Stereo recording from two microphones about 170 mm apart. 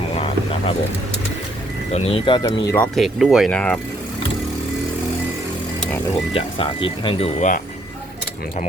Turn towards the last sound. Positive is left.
turn(degrees=35)  # may be behind; listen again after turning